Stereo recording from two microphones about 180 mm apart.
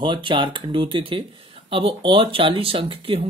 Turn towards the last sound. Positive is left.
turn(degrees=-30)  # may be behind; listen again after turning